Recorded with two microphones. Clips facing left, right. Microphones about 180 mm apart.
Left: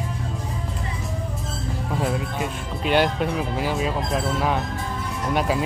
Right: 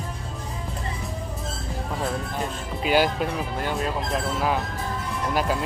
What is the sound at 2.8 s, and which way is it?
Speech, centre (ahead or behind).